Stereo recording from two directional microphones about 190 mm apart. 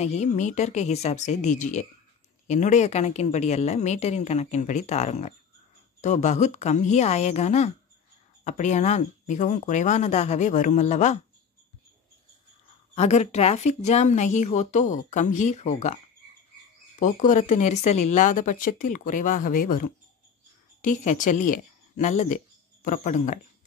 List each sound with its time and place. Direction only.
0.0 s a woman's voice: 35° left (ahead or behind)
12.9 s a woman's voice: 35° left (ahead or behind)
17.0 s speech: 40° left (ahead or behind)